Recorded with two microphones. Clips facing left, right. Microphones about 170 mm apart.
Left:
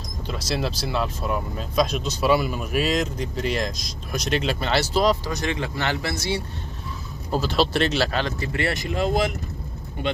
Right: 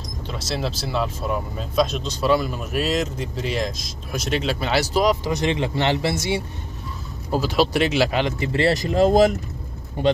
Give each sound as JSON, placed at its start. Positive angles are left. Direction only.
{"t": 0.3, "sound": "speech", "side_deg": 0}
{"t": 7.2, "sound": "speech", "side_deg": -10}
{"t": 8.5, "sound": "speech", "side_deg": -35}